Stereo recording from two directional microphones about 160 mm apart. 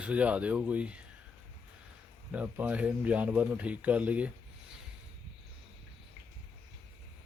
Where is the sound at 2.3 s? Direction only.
10° right (ahead or behind).